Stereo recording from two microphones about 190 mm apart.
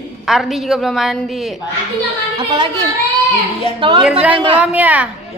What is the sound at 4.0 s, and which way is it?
A woman's voice, 5° right (ahead or behind).